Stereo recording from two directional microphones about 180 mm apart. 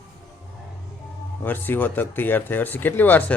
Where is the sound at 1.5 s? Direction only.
10° left (ahead or behind).